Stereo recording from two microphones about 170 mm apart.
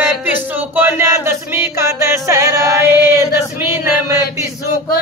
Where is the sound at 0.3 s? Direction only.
10° right (ahead or behind).